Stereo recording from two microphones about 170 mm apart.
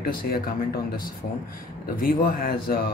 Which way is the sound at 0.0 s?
60° left (ahead or behind).